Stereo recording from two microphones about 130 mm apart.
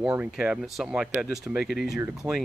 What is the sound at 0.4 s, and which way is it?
Speech, 5° right (ahead or behind).